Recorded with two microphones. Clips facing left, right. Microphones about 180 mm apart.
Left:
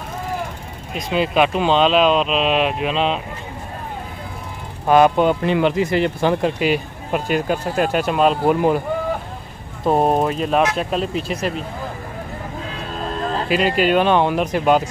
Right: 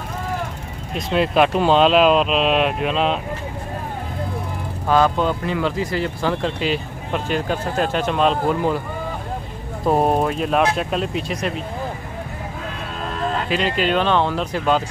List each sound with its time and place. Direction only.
0.9 s speech: centre (ahead or behind)
4.8 s speech: 15° left (ahead or behind)
9.8 s speech: centre (ahead or behind)
13.1 s music: 35° left (ahead or behind)
13.7 s speech: 10° left (ahead or behind)